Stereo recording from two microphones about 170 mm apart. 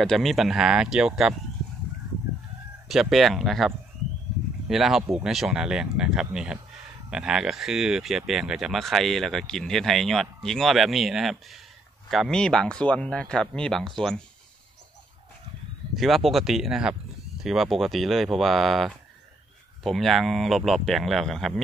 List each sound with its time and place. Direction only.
0.0 s speech: centre (ahead or behind)
2.9 s speech: centre (ahead or behind)
16.0 s speech: centre (ahead or behind)